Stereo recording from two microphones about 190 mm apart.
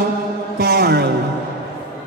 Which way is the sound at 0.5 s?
60° right (ahead or behind).